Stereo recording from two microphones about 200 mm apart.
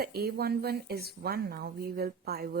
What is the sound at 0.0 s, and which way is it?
Speech, 50° right (ahead or behind).